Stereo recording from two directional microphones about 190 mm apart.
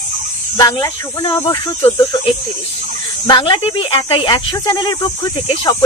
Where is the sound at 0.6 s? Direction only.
20° left (ahead or behind).